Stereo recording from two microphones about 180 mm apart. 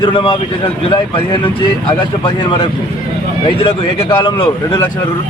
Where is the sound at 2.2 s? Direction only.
25° left (ahead or behind).